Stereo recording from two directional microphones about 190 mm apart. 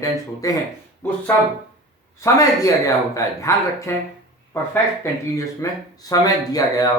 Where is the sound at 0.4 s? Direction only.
15° left (ahead or behind).